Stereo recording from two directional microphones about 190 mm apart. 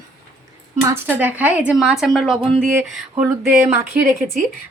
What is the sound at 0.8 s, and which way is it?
A woman's voice, 10° right (ahead or behind).